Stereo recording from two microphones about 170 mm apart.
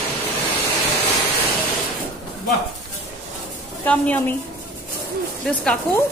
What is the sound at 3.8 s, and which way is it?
Speech, 10° left (ahead or behind).